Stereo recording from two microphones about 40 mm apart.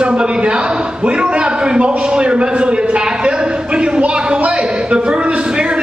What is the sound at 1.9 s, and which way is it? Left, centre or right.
A man's voice, right.